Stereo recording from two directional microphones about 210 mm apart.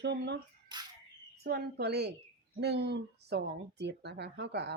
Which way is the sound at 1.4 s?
50° right (ahead or behind).